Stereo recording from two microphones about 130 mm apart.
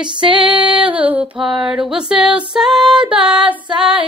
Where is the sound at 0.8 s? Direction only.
10° right (ahead or behind).